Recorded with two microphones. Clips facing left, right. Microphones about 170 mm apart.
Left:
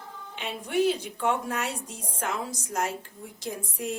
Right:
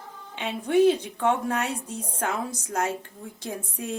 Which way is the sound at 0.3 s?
60° right (ahead or behind).